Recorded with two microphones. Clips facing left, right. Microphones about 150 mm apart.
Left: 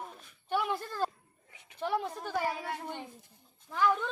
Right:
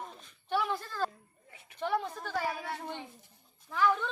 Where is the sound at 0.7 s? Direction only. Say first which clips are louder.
Left 1 dB; 10° left (ahead or behind).